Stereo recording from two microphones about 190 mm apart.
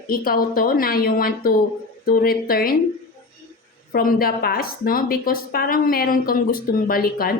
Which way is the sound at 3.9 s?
50° left (ahead or behind).